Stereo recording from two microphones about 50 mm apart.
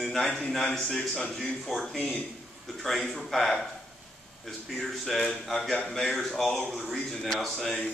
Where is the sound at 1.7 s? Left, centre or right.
Centre.